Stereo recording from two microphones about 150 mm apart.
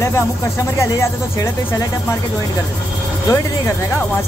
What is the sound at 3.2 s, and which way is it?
Speech, 20° left (ahead or behind).